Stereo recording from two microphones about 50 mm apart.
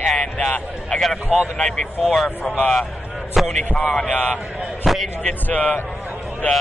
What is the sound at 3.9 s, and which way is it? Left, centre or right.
Speech, left.